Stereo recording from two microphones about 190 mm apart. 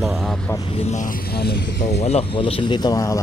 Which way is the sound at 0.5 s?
30° left (ahead or behind).